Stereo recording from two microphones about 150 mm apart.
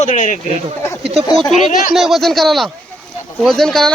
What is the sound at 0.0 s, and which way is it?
Speech, 60° left (ahead or behind).